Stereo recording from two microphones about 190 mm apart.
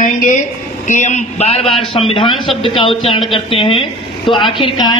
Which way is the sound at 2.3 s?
Centre (ahead or behind).